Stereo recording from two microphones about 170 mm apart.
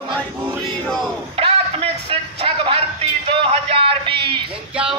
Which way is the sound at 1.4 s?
35° right (ahead or behind).